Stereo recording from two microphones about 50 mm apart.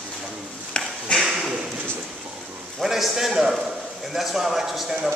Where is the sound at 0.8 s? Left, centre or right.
Left.